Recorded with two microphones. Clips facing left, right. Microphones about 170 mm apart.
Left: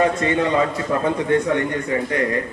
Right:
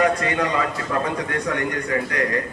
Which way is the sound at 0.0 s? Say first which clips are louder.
Left 2 dB; 25° left (ahead or behind).